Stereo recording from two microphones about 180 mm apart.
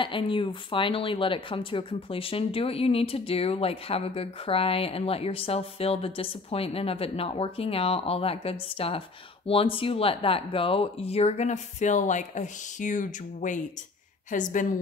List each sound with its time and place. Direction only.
0.0 s a woman's voice: 30° left (ahead or behind); by 14.7 s 45° left (ahead or behind)